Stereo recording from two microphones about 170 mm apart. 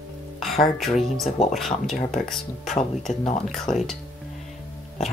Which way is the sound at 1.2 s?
40° left (ahead or behind).